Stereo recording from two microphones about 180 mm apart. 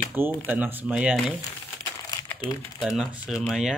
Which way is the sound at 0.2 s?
10° right (ahead or behind).